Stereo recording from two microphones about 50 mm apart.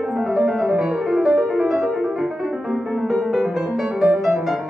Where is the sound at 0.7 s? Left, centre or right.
Centre.